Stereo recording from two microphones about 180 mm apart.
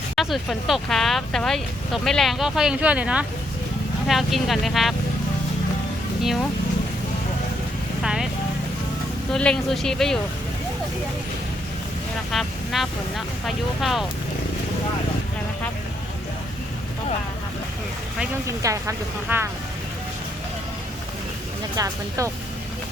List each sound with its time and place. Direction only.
0.2 s speech: centre (ahead or behind)
6.2 s speech: centre (ahead or behind)
8.0 s speech: 5° right (ahead or behind)
9.3 s speech: 5° left (ahead or behind)
12.3 s speech: centre (ahead or behind)
18.4 s speech: 15° right (ahead or behind)
21.8 s speech: 20° right (ahead or behind)